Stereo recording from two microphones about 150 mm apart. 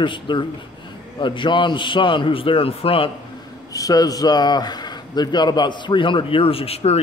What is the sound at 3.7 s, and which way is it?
Speech, 25° left (ahead or behind).